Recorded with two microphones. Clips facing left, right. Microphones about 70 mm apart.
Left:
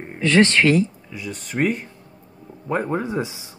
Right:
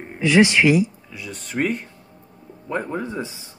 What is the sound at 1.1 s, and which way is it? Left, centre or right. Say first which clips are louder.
Speech: even; centre.